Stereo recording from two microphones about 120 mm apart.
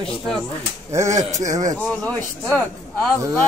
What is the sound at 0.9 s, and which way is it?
Speech, 25° right (ahead or behind).